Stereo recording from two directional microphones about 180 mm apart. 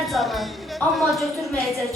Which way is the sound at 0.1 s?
Centre (ahead or behind).